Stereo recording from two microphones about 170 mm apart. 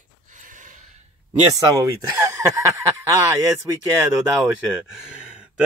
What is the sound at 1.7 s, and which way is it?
Speech, 15° right (ahead or behind).